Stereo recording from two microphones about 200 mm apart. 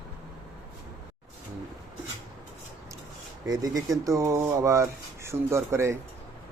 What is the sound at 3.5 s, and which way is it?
Speech, 20° right (ahead or behind).